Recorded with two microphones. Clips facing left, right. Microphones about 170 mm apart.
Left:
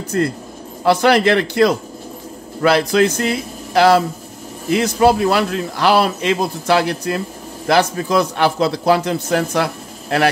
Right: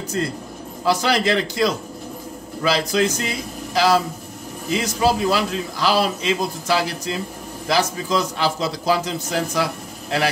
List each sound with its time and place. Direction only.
0.1 s a man's voice: 60° left (ahead or behind)